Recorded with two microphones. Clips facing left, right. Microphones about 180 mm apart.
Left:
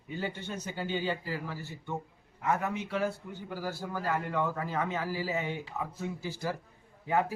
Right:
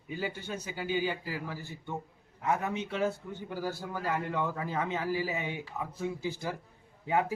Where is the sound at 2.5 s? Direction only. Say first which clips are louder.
Even; 20° right (ahead or behind).